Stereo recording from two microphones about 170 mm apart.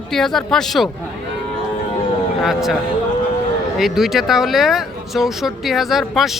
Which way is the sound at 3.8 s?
Centre (ahead or behind).